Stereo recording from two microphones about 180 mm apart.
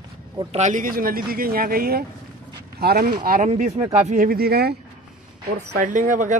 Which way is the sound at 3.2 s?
45° right (ahead or behind).